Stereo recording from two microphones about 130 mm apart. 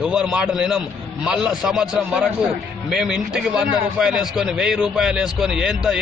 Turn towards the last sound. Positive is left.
turn(degrees=-5)  # may be behind; listen again after turning